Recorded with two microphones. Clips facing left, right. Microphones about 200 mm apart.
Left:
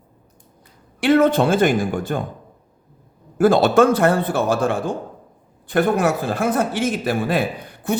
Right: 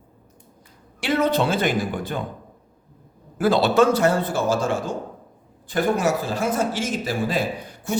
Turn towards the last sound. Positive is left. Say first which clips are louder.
# left 2 dB
turn(degrees=60)  # may be behind; listen again after turning